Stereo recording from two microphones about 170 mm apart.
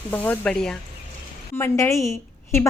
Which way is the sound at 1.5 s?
15° left (ahead or behind).